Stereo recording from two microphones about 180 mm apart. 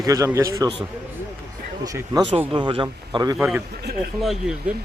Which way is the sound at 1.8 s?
20° right (ahead or behind).